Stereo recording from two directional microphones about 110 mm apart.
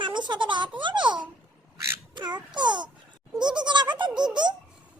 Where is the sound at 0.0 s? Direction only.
45° right (ahead or behind).